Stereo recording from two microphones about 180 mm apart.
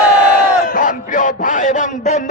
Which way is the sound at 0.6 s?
50° left (ahead or behind).